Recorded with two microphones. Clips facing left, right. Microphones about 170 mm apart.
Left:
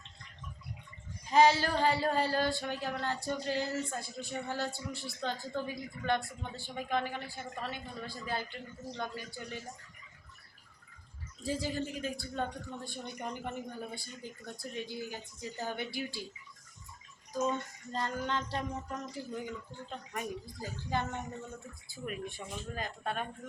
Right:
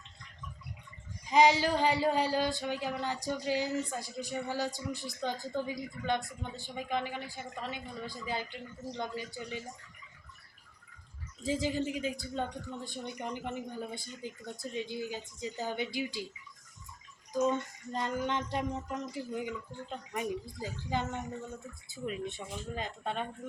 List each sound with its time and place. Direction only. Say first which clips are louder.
1.3 s a man's voice: right 1 dB; 15° right (ahead or behind)
11.4 s a man's voice: right 3 dB; 20° right (ahead or behind)
17.9 s a man's voice: right 2 dB; 20° right (ahead or behind)